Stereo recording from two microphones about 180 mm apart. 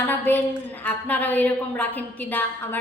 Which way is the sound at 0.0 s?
10° left (ahead or behind).